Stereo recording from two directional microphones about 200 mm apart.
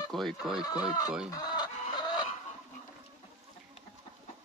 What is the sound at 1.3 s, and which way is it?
Chicken, 20° left (ahead or behind).